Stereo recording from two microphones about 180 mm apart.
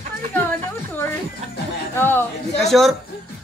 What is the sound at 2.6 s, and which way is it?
Speech, centre (ahead or behind).